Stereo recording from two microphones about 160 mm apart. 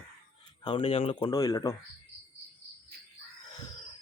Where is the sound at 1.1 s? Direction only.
25° left (ahead or behind).